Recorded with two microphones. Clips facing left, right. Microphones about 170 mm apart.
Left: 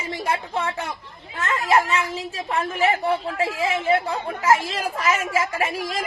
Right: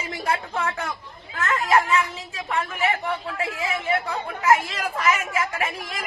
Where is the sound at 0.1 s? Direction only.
25° left (ahead or behind).